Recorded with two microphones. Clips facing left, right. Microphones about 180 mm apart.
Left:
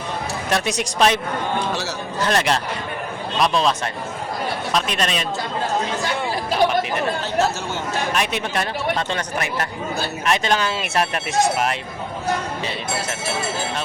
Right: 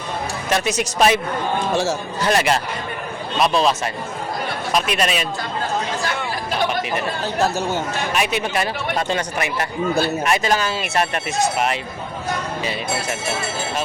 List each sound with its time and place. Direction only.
0.5 s speech: centre (ahead or behind)
1.7 s speech: 50° right (ahead or behind)
2.2 s speech: 5° right (ahead or behind)
8.1 s speech: 5° right (ahead or behind)